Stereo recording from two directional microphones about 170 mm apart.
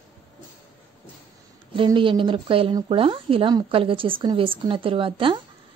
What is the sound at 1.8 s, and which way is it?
Speech, 30° right (ahead or behind).